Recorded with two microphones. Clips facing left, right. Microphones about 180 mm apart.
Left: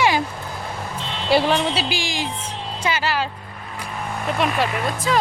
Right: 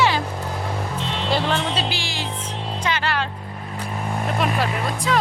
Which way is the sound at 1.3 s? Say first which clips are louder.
Left 5 dB; 10° left (ahead or behind).